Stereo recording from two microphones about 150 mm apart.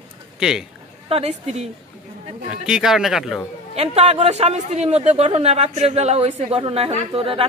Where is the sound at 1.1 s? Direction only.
45° right (ahead or behind).